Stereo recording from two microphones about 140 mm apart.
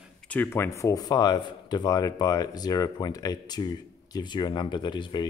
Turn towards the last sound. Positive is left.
turn(degrees=35)  # may be behind; listen again after turning